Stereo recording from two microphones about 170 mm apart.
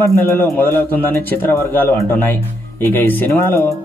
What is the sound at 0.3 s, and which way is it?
Speech, 15° left (ahead or behind).